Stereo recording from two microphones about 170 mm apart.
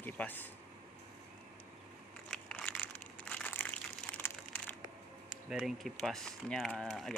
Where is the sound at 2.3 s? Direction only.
5° left (ahead or behind).